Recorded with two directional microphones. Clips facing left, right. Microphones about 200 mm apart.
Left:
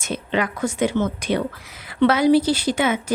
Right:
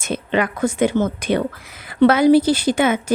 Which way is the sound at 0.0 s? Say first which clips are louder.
Right 3 dB; 55° right (ahead or behind).